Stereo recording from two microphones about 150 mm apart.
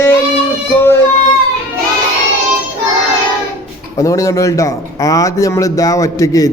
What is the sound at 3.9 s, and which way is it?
Speech, 20° left (ahead or behind).